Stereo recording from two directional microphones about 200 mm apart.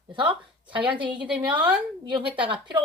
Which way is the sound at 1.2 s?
5° right (ahead or behind).